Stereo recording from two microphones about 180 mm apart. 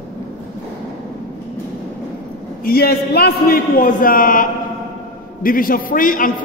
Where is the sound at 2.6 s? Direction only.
55° left (ahead or behind).